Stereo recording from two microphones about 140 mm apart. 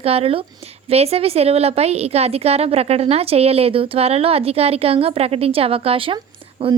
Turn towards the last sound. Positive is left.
turn(degrees=-40)  # may be behind; listen again after turning